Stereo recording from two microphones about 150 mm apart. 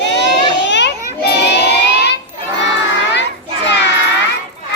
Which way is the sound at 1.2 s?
90° left.